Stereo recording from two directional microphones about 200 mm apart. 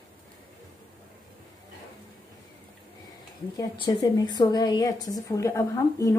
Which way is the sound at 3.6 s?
20° left (ahead or behind).